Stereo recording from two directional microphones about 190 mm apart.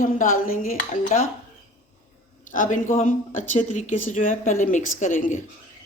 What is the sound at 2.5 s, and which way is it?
Speech, 40° left (ahead or behind).